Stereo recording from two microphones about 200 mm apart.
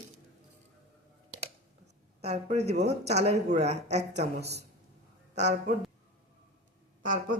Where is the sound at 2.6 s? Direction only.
55° right (ahead or behind).